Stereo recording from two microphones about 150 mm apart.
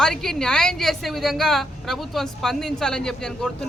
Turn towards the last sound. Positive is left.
turn(degrees=5)  # may be behind; listen again after turning